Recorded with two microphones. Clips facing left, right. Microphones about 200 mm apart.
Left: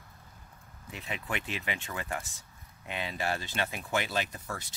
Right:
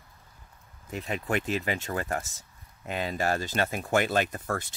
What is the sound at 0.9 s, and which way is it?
Speech, 45° right (ahead or behind).